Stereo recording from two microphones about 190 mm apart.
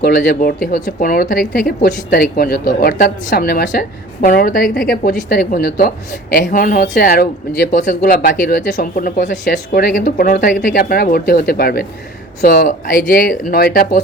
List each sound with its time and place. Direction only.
0.0 s speech: 50° left (ahead or behind)